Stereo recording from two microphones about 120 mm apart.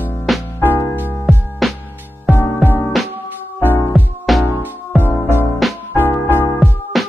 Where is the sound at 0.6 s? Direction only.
15° left (ahead or behind).